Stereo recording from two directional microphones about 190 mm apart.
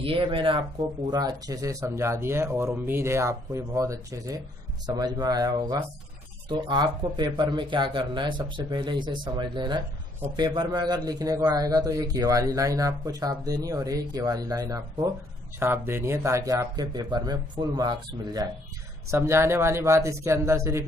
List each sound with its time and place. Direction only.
0.0 s a man's voice: 30° right (ahead or behind)